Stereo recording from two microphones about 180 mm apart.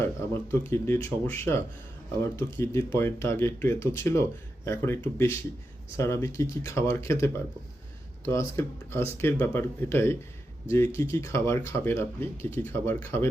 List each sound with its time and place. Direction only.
0.5 s speech: 15° left (ahead or behind)
8.3 s speech: 15° left (ahead or behind)